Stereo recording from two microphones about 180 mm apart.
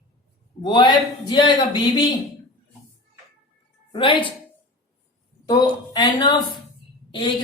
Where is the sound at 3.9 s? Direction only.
30° left (ahead or behind).